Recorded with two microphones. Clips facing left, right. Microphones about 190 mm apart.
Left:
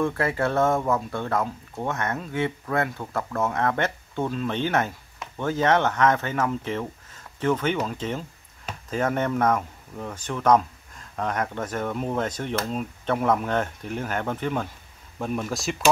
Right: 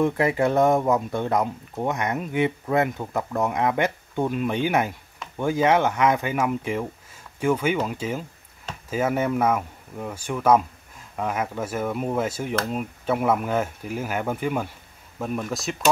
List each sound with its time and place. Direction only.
0.0 s speech: 15° right (ahead or behind); by 15.9 s centre (ahead or behind)